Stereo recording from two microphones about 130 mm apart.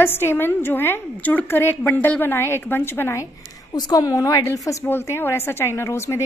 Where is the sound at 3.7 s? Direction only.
30° left (ahead or behind).